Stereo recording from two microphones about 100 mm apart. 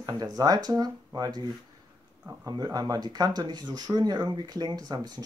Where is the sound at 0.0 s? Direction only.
40° right (ahead or behind).